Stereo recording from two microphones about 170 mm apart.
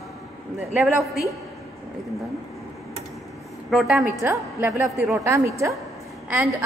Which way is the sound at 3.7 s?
Centre (ahead or behind).